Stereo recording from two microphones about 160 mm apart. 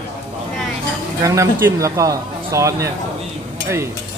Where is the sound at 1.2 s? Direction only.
20° right (ahead or behind).